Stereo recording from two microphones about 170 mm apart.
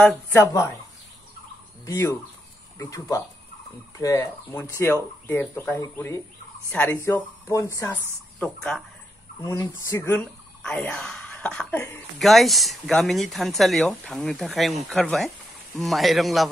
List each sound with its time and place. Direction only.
0.0 s speech: 10° left (ahead or behind)
1.9 s speech: 15° left (ahead or behind)
9.4 s speech: 20° left (ahead or behind)
12.2 s speech: centre (ahead or behind)